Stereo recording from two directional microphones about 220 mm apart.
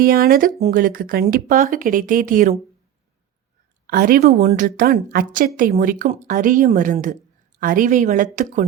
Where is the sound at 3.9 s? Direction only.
40° right (ahead or behind).